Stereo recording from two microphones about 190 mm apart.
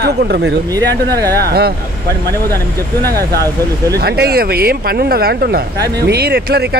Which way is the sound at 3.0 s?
55° right (ahead or behind).